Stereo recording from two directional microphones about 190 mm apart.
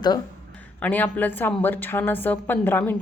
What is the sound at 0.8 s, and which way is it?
A woman's voice, 10° left (ahead or behind).